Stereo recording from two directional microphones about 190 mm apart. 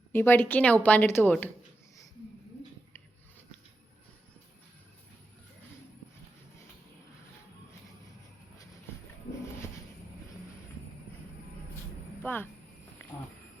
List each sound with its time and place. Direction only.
0.1 s speech: 10° left (ahead or behind)
12.2 s speech: 10° left (ahead or behind)